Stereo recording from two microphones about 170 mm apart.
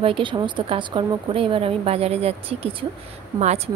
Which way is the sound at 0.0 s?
30° right (ahead or behind).